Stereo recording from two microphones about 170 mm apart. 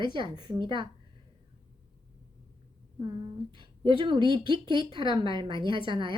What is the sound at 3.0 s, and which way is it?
A woman's voice, 25° right (ahead or behind).